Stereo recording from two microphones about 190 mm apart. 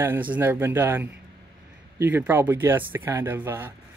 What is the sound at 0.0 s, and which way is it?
Speech, 10° right (ahead or behind).